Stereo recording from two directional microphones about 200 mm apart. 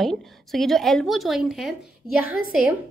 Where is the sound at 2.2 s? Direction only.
45° left (ahead or behind).